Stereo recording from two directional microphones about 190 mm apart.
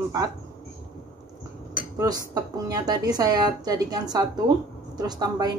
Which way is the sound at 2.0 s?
20° right (ahead or behind).